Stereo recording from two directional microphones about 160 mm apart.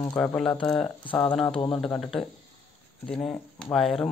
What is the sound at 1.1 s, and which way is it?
Frying, 10° left (ahead or behind).